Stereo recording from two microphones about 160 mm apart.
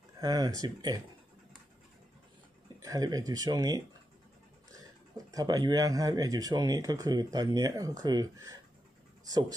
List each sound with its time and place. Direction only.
0.2 s speech: 25° right (ahead or behind)
2.8 s speech: 25° right (ahead or behind)
5.1 s speech: 20° right (ahead or behind)